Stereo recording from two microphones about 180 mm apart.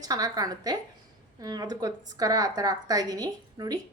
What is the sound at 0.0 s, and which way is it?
A woman's voice, 20° right (ahead or behind).